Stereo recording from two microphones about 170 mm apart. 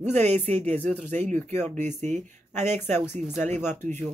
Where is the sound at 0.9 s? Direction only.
45° right (ahead or behind).